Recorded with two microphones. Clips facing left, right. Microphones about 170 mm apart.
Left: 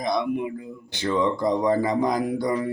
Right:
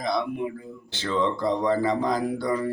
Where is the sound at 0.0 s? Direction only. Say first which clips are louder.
Left 2 dB; 15° left (ahead or behind).